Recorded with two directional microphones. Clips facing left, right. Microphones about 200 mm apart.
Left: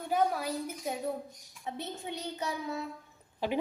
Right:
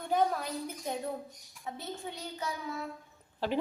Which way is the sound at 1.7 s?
20° left (ahead or behind).